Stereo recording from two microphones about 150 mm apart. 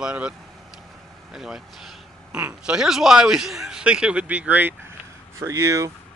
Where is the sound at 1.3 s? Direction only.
5° right (ahead or behind).